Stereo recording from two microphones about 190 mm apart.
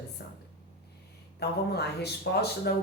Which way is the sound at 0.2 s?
60° left (ahead or behind).